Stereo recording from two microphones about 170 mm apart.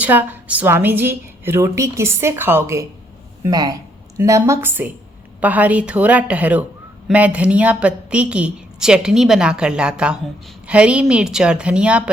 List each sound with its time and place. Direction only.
0.0 s a woman's voice: 10° right (ahead or behind)